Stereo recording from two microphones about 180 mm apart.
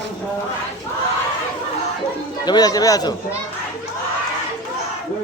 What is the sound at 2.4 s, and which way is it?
Speech, 20° left (ahead or behind).